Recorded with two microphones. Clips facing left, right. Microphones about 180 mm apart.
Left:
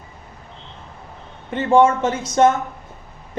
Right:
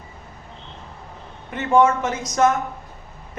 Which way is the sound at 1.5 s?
30° left (ahead or behind).